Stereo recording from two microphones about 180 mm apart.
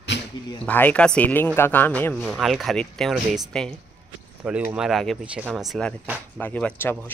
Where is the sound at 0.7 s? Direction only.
10° left (ahead or behind).